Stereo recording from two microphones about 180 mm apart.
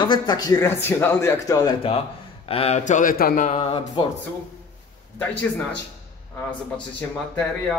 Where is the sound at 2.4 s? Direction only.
35° left (ahead or behind).